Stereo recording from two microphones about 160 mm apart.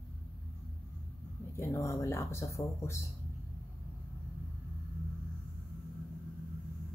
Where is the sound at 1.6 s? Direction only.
15° left (ahead or behind).